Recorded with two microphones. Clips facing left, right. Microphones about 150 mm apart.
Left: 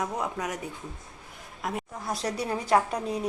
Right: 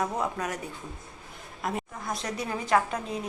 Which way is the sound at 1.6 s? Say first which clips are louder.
Right 1 dB; 5° left (ahead or behind).